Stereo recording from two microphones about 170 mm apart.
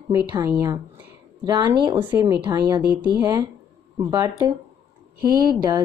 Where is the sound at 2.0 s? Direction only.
10° right (ahead or behind).